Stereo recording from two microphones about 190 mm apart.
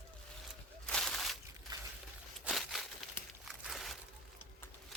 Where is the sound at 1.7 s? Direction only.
20° right (ahead or behind).